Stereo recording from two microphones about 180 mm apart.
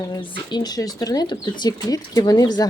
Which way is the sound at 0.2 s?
25° left (ahead or behind).